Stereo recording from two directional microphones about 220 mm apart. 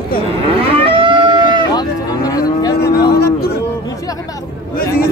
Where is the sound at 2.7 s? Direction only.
45° left (ahead or behind).